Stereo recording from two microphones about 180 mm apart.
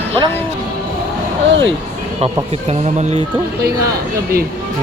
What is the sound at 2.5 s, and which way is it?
Speech, 40° right (ahead or behind).